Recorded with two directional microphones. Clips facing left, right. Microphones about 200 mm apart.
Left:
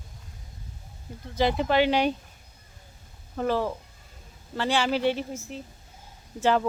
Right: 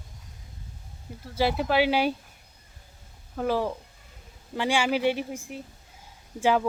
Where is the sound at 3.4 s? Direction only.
10° right (ahead or behind).